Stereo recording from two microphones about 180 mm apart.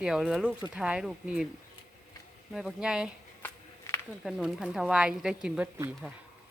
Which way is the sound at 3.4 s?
10° left (ahead or behind).